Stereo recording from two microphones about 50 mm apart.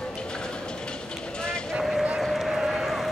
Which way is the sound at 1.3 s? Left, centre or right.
Centre.